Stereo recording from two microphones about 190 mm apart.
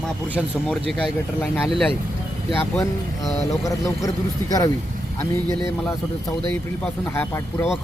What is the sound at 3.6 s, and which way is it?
Speech, 15° left (ahead or behind).